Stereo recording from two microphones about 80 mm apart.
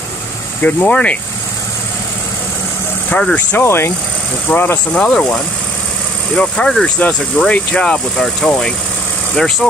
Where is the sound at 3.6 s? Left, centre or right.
Left.